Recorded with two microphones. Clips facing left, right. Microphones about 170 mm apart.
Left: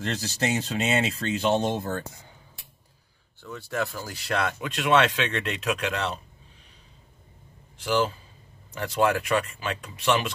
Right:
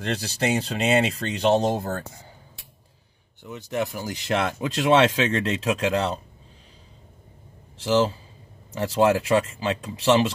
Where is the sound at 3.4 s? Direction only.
20° right (ahead or behind); by 6.2 s 35° right (ahead or behind).